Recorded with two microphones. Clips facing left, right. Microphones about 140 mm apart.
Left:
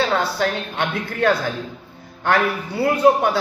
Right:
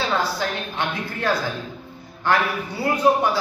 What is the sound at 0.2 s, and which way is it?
A man's voice, 60° left (ahead or behind).